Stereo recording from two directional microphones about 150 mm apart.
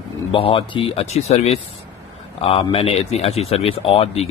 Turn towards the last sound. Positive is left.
turn(degrees=40)  # may be behind; listen again after turning